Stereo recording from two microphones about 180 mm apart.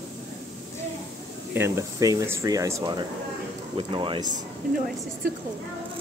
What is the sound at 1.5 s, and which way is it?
Speech, 15° right (ahead or behind).